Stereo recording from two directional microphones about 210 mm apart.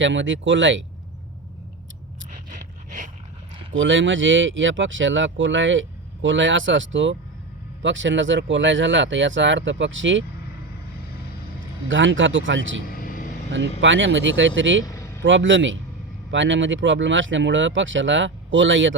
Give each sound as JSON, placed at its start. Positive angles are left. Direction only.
{"t": 0.0, "sound": "speech", "side_deg": -60}
{"t": 2.3, "sound": "scrape", "side_deg": -40}
{"t": 3.7, "sound": "speech", "side_deg": -65}
{"t": 11.9, "sound": "speech", "side_deg": -65}
{"t": 14.8, "sound": "vehicle", "side_deg": 15}
{"t": 15.2, "sound": "speech", "side_deg": -65}